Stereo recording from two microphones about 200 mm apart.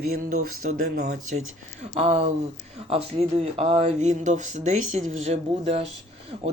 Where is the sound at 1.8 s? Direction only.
30° right (ahead or behind).